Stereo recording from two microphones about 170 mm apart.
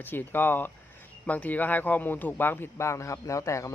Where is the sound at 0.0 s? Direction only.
10° left (ahead or behind).